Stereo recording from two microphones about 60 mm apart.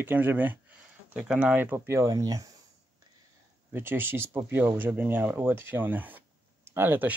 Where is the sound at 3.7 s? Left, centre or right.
Right.